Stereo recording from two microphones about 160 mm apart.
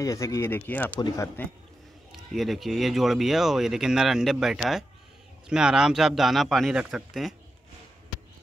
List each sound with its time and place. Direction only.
0.0 s speech: 20° left (ahead or behind)
2.3 s speech: centre (ahead or behind)